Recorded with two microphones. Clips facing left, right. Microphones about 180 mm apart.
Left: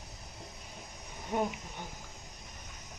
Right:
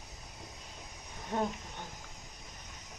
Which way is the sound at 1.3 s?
10° left (ahead or behind).